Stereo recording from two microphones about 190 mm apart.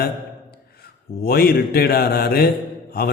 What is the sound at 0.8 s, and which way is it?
A man's voice, 55° left (ahead or behind).